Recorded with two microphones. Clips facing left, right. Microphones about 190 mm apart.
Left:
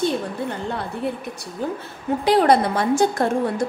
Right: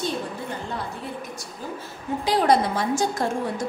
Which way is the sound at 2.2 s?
60° left (ahead or behind).